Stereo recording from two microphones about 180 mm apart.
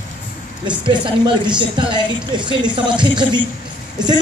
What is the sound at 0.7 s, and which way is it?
Speech, 25° right (ahead or behind).